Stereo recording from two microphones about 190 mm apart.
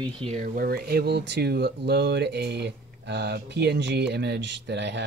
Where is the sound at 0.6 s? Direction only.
50° right (ahead or behind).